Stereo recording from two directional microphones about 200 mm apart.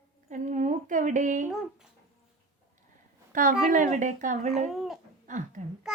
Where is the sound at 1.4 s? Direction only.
Centre (ahead or behind).